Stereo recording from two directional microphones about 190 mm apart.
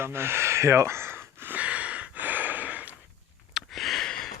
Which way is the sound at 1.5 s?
5° right (ahead or behind).